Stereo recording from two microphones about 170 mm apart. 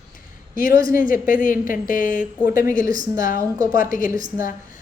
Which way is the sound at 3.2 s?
55° left (ahead or behind).